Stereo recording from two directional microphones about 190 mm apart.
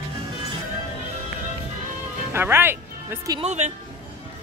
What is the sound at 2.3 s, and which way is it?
Music, 10° right (ahead or behind).